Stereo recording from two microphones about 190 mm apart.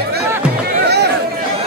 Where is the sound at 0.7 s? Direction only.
60° right (ahead or behind).